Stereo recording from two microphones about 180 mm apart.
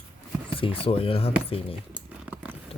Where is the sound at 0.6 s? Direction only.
30° left (ahead or behind).